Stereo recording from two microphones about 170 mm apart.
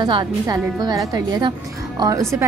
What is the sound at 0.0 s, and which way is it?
A woman's voice, 25° right (ahead or behind).